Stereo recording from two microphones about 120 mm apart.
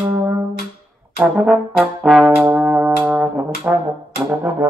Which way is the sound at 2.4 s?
15° right (ahead or behind).